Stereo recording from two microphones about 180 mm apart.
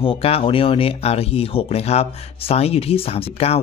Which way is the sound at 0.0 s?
30° left (ahead or behind).